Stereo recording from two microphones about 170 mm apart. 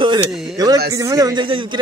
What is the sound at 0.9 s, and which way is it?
Speech, 20° right (ahead or behind).